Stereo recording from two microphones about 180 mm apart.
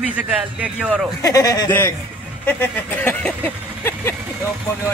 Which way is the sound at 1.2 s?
20° left (ahead or behind).